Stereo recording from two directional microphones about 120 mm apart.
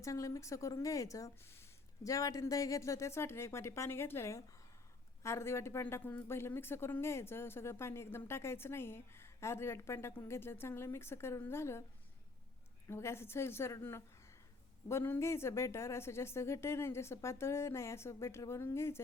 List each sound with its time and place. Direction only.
0.0 s speech: 25° left (ahead or behind)
12.9 s speech: 20° left (ahead or behind)